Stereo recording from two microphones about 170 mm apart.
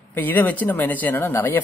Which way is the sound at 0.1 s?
10° left (ahead or behind).